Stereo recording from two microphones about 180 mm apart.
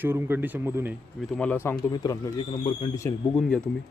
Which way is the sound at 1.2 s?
5° left (ahead or behind).